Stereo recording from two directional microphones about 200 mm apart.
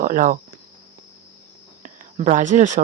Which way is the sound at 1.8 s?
40° right (ahead or behind).